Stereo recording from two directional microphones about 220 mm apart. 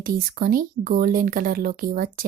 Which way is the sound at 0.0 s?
40° right (ahead or behind).